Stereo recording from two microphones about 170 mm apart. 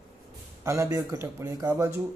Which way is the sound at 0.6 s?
15° right (ahead or behind).